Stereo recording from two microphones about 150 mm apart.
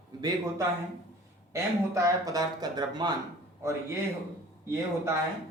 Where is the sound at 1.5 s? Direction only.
20° right (ahead or behind).